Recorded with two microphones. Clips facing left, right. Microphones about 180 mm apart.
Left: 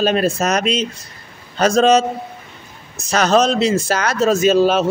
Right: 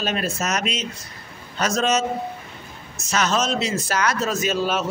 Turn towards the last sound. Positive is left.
turn(degrees=30)  # may be behind; listen again after turning